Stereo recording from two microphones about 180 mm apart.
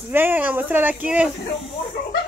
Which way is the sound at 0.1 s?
10° right (ahead or behind).